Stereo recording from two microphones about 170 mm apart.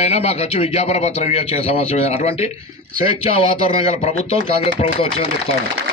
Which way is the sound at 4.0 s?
35° left (ahead or behind).